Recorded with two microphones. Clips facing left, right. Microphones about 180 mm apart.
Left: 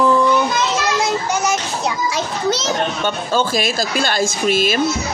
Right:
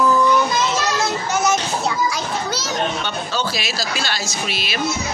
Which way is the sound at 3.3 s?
50° left (ahead or behind).